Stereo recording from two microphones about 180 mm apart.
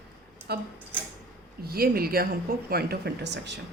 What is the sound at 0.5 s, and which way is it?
Speech, 65° right (ahead or behind).